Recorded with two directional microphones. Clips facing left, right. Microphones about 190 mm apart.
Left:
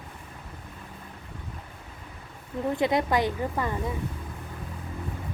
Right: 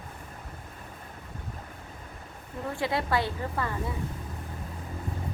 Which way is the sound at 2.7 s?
20° left (ahead or behind).